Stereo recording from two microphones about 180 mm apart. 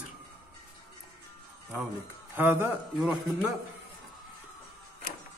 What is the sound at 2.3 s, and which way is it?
Speech, 10° right (ahead or behind).